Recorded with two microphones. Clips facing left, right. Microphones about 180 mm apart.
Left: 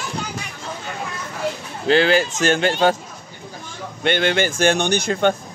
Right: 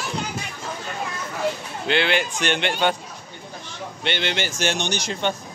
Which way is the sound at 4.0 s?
50° left (ahead or behind).